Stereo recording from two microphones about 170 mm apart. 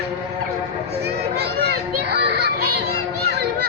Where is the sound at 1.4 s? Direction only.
70° right (ahead or behind).